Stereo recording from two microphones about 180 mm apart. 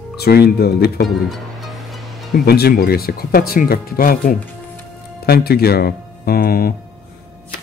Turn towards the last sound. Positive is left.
turn(degrees=55)  # may be behind; listen again after turning